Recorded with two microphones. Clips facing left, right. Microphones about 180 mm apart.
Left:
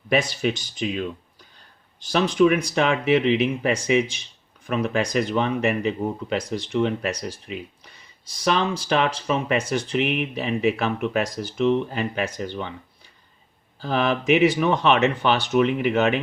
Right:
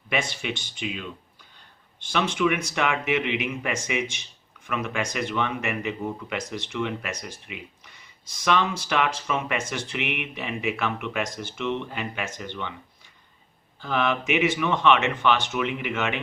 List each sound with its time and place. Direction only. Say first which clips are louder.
0.1 s speech: left 6 dB; 40° left (ahead or behind)
13.7 s speech: left 3 dB; 35° left (ahead or behind)